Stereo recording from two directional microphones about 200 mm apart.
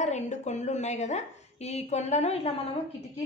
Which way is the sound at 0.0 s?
35° left (ahead or behind).